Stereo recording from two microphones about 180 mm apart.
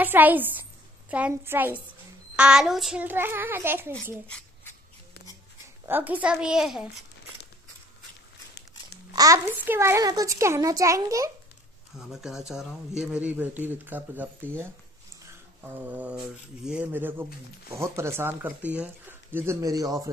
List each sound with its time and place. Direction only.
0.0 s speech: 10° right (ahead or behind)
5.9 s speech: 10° right (ahead or behind)
9.1 s speech: 20° right (ahead or behind)
12.1 s speech: centre (ahead or behind)
15.6 s speech: 10° right (ahead or behind)